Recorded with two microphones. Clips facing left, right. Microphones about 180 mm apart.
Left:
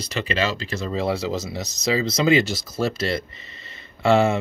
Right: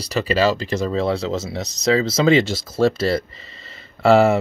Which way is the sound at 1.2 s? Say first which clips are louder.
Right 2 dB; 25° right (ahead or behind).